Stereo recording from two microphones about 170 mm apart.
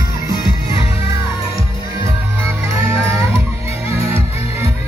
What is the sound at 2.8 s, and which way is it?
Music, 15° right (ahead or behind).